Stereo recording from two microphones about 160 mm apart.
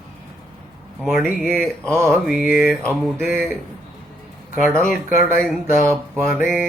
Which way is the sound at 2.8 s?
15° right (ahead or behind).